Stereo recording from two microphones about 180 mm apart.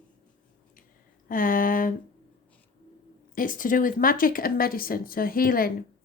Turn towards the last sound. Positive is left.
turn(degrees=55)  # may be behind; listen again after turning